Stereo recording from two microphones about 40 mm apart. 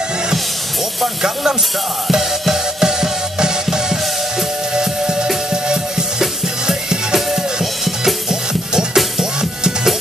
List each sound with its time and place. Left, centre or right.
1.0 s hiss: centre
2.0 s music: centre